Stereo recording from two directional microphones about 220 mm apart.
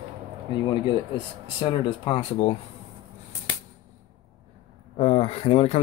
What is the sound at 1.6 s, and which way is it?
Speech, 25° left (ahead or behind).